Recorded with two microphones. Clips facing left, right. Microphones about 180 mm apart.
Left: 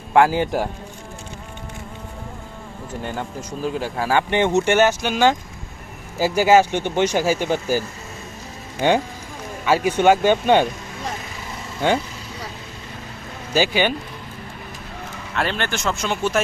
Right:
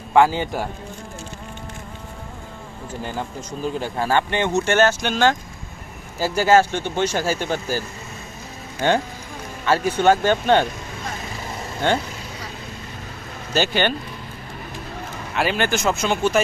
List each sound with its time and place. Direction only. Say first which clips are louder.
0.1 s speech: left 1 dB; 10° left (ahead or behind)
3.0 s speech: even; centre (ahead or behind)
4.2 s speech: left 3 dB; 15° left (ahead or behind)
8.8 s speech: left 2 dB; 15° left (ahead or behind)
13.5 s speech: left 1 dB; 10° left (ahead or behind)
15.4 s speech: right 3 dB; 5° right (ahead or behind)